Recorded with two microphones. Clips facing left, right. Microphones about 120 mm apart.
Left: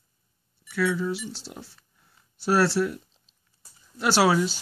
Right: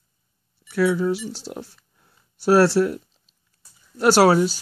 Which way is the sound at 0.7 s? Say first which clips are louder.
Right 5 dB; 45° right (ahead or behind).